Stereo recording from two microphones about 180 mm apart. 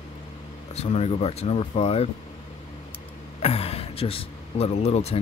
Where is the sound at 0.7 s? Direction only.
35° left (ahead or behind).